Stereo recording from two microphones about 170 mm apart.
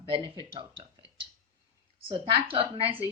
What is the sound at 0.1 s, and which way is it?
Speech, 30° right (ahead or behind).